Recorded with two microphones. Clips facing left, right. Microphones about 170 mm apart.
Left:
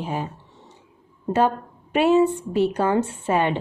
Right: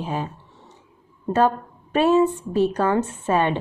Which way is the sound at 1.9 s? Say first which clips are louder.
Even; 25° left (ahead or behind).